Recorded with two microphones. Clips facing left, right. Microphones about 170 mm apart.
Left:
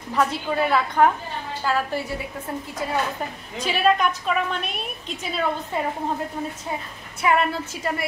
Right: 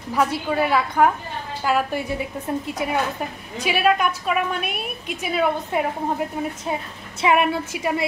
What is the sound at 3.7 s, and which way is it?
A woman's voice, 5° right (ahead or behind).